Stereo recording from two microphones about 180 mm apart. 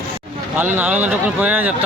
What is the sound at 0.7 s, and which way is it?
A man's voice, 10° right (ahead or behind).